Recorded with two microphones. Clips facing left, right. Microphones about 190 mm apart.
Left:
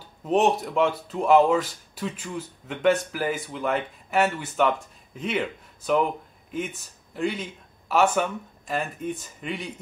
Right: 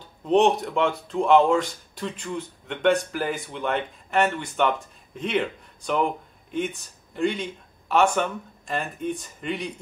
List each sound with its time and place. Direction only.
0.2 s speech: 5° left (ahead or behind)